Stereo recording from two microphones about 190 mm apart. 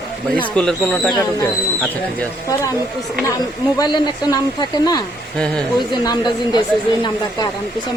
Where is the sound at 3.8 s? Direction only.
25° left (ahead or behind).